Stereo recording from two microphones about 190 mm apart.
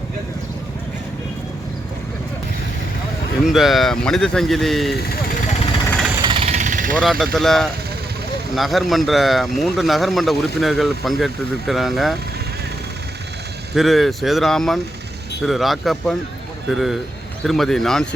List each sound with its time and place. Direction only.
3.4 s a man's voice: centre (ahead or behind)
6.2 s jackhammer: 35° right (ahead or behind)
7.0 s a man's voice: centre (ahead or behind)
13.7 s a man's voice: centre (ahead or behind)